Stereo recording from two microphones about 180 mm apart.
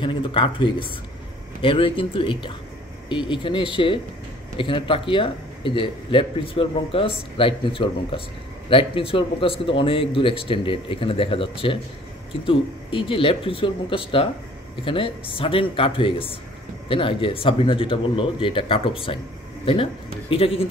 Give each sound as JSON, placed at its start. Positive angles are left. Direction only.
{"t": 0.0, "sound": "speech", "side_deg": 30}